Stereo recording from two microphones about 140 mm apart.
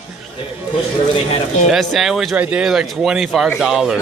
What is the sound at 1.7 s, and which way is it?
Speech, centre (ahead or behind).